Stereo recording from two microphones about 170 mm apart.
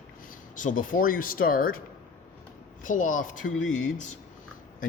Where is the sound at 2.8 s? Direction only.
50° left (ahead or behind).